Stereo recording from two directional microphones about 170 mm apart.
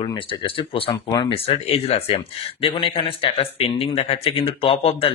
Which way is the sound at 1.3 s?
35° left (ahead or behind).